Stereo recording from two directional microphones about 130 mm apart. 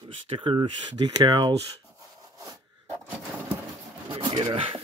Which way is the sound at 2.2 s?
25° right (ahead or behind).